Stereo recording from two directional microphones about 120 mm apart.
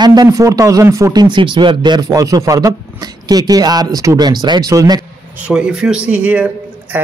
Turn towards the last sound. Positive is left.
turn(degrees=-15)  # may be behind; listen again after turning